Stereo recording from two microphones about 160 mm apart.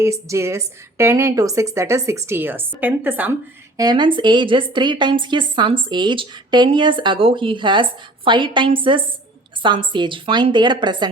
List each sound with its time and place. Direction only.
0.0 s a woman's voice: 15° right (ahead or behind)
3.8 s a woman's voice: 25° right (ahead or behind)